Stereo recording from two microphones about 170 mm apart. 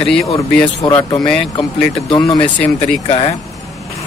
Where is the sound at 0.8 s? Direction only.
25° left (ahead or behind).